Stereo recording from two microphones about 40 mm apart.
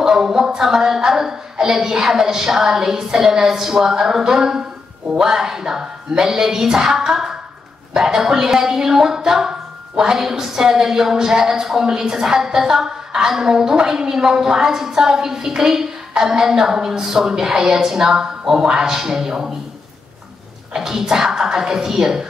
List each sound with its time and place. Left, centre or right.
0.0 s a man's voice: centre
20.7 s speech: centre